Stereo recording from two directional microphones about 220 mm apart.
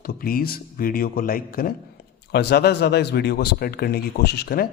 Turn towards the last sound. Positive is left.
turn(degrees=45)  # may be behind; listen again after turning